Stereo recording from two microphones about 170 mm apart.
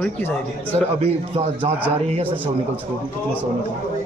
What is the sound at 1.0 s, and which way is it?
Speech, 35° right (ahead or behind).